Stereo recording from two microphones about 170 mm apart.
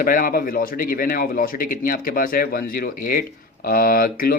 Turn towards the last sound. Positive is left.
turn(degrees=60)  # may be behind; listen again after turning